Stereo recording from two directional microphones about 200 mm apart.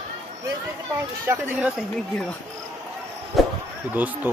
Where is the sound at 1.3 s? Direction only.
10° right (ahead or behind).